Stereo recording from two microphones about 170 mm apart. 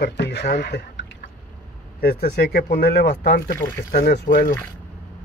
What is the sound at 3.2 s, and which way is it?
Speech, 60° left (ahead or behind).